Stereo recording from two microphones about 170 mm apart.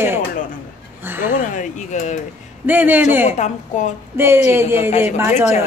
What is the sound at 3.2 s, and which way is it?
Speech, 40° left (ahead or behind).